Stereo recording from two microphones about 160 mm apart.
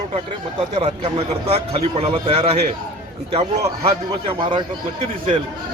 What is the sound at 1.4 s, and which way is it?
Speech, 40° right (ahead or behind).